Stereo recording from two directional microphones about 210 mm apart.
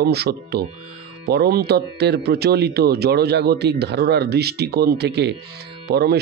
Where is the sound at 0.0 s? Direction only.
50° right (ahead or behind).